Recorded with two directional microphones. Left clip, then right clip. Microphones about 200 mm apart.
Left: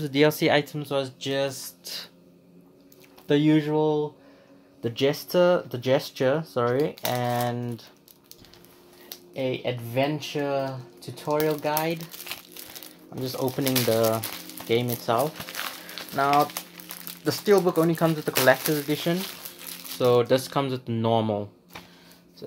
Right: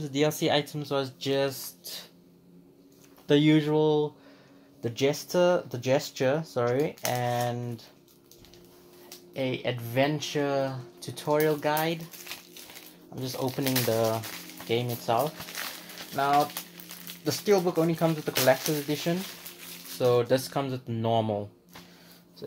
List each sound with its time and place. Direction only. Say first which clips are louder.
0.0 s speech: left 5 dB; 25° left (ahead or behind)
0.7 s speech: left 2 dB; 5° right (ahead or behind)
3.3 s speech: left 1 dB; 5° right (ahead or behind)
4.8 s speech: left 3 dB; 5° left (ahead or behind)
9.3 s speech: left 2 dB; 5° right (ahead or behind)
13.1 s speech: left 3 dB; 15° left (ahead or behind)